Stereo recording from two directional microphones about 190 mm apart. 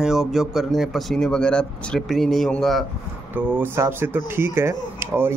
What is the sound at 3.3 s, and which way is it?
Speech, 10° right (ahead or behind).